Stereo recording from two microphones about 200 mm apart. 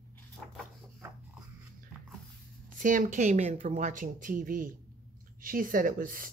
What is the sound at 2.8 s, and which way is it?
Speech, 40° right (ahead or behind).